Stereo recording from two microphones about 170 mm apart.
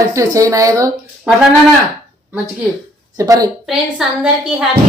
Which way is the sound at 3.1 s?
20° right (ahead or behind).